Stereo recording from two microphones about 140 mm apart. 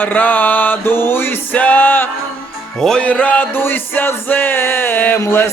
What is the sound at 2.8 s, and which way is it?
Music, 5° left (ahead or behind).